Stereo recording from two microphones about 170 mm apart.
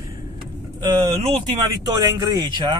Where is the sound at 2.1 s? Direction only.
20° right (ahead or behind).